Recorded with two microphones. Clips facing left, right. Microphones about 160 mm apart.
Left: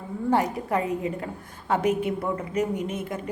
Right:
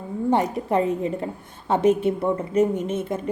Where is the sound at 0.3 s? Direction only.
25° right (ahead or behind).